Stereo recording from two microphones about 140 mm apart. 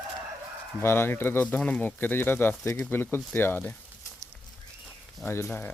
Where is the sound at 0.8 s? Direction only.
15° left (ahead or behind).